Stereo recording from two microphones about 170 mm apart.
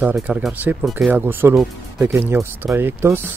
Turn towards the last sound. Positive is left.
turn(degrees=-15)  # may be behind; listen again after turning